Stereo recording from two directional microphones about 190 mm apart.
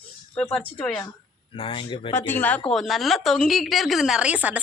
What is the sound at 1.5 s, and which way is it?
Speech, 25° left (ahead or behind).